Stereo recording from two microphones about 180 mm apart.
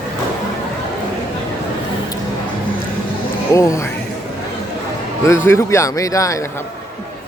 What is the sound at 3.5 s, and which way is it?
Speech, 15° left (ahead or behind).